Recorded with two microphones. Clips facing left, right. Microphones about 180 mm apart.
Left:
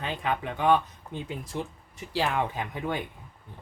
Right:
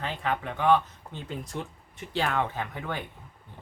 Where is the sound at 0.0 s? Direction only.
15° left (ahead or behind).